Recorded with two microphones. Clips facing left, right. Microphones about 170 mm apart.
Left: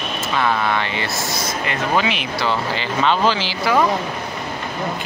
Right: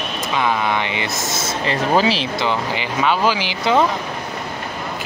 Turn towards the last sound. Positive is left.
turn(degrees=-20)  # may be behind; listen again after turning